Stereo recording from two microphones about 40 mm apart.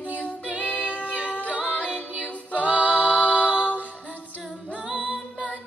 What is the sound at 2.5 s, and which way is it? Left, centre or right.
A capella, right.